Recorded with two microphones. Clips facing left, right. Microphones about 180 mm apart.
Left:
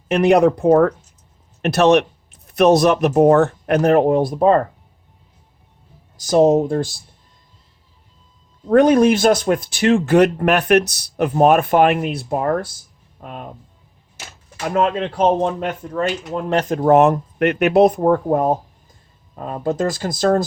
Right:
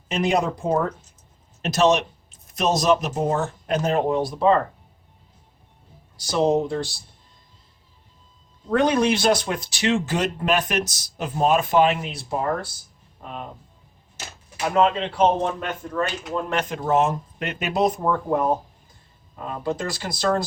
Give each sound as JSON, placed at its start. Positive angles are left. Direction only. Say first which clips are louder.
{"t": 0.1, "sound": "speech", "louder": "left 9 dB", "side_deg": 65}
{"t": 6.1, "sound": "speech", "louder": "left 7 dB", "side_deg": 45}
{"t": 8.7, "sound": "speech", "louder": "left 7 dB", "side_deg": 50}
{"t": 14.8, "sound": "speech", "louder": "left 1 dB", "side_deg": 45}
{"t": 16.0, "sound": "speech", "louder": "left 3 dB", "side_deg": 30}
{"t": 16.8, "sound": "speech", "louder": "left 9 dB", "side_deg": 60}